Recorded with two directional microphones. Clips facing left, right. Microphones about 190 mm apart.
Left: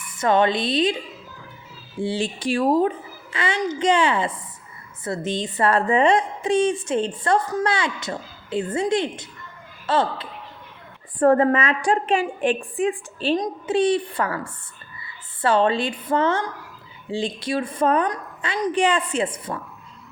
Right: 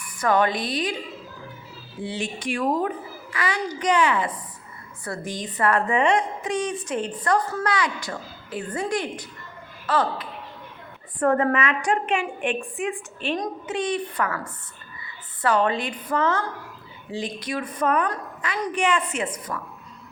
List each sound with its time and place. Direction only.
0.0 s a woman's voice: 25° left (ahead or behind)
2.0 s a woman's voice: 30° left (ahead or behind)